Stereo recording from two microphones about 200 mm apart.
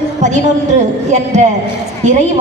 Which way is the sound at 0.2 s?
35° right (ahead or behind).